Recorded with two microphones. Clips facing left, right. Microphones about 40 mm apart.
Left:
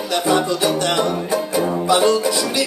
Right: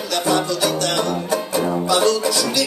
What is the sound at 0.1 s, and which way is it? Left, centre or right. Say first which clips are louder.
Music: left 2 dB; centre.